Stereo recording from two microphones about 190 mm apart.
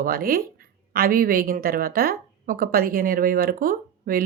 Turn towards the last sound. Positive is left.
turn(degrees=-50)  # may be behind; listen again after turning